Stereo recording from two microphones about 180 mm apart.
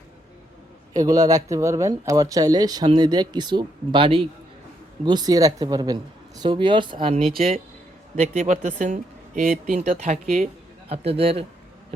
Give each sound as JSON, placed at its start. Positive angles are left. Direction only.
{"t": 0.9, "sound": "speech", "side_deg": -20}
{"t": 8.1, "sound": "speech", "side_deg": -45}
{"t": 10.8, "sound": "a man's voice", "side_deg": -35}